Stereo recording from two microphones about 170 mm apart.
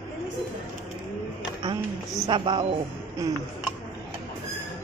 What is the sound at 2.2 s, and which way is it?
Speech, 30° right (ahead or behind).